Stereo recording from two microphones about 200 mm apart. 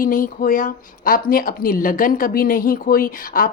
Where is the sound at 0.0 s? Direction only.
45° left (ahead or behind).